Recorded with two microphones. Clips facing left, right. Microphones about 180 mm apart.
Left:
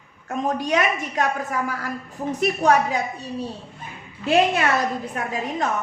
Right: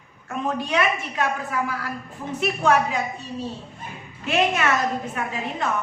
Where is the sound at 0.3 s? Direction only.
40° left (ahead or behind).